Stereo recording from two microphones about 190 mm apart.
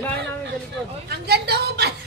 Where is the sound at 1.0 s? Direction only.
55° right (ahead or behind).